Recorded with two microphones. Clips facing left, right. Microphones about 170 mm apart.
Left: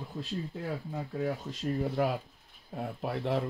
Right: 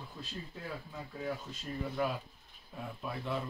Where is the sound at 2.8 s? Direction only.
85° left.